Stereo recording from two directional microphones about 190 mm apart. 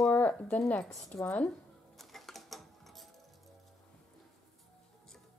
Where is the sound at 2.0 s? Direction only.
Centre (ahead or behind).